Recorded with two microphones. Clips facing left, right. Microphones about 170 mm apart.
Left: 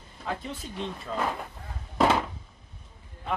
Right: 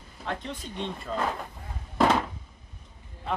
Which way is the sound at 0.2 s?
5° left (ahead or behind).